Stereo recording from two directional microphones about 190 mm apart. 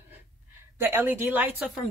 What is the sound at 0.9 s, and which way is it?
Speech, 10° right (ahead or behind).